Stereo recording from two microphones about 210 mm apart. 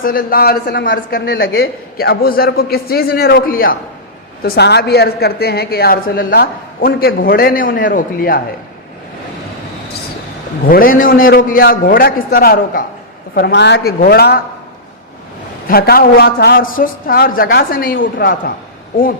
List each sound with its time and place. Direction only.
0.0 s a woman's voice: 45° left (ahead or behind)
10.7 s a woman's voice: 40° left (ahead or behind)
15.6 s a woman's voice: 45° left (ahead or behind)